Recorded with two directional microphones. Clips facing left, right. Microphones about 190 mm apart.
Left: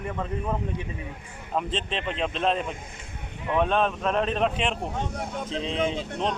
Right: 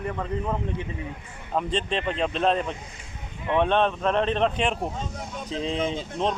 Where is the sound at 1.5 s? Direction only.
Centre (ahead or behind).